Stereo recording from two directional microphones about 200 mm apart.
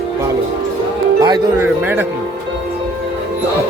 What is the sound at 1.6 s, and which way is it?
Speech, 10° right (ahead or behind).